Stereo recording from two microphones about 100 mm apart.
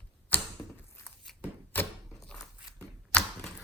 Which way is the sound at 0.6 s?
35° left (ahead or behind).